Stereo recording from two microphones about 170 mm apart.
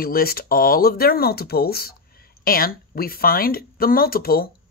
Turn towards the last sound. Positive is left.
turn(degrees=60)  # may be behind; listen again after turning